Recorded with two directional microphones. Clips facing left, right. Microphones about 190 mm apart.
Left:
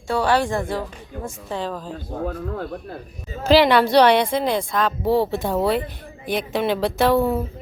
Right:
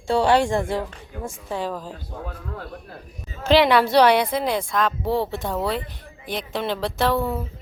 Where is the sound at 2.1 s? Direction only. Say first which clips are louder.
Left 10 dB; 50° left (ahead or behind).